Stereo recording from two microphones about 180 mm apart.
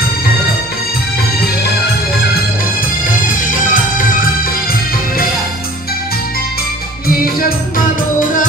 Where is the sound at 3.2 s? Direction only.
50° left (ahead or behind).